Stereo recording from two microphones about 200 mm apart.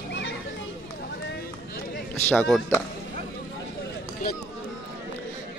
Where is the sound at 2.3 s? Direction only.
5° left (ahead or behind).